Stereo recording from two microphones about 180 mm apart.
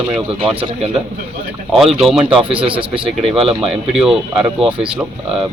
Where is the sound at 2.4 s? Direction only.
30° right (ahead or behind).